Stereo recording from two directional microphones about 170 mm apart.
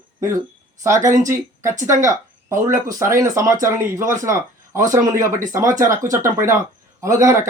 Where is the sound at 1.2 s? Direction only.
50° right (ahead or behind).